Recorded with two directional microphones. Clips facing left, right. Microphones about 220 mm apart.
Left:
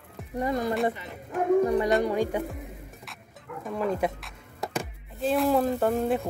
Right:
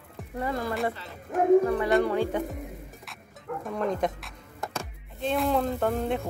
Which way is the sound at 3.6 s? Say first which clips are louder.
Left 1 dB; 5° left (ahead or behind).